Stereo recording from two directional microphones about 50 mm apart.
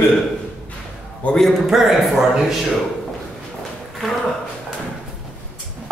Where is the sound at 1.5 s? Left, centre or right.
Centre.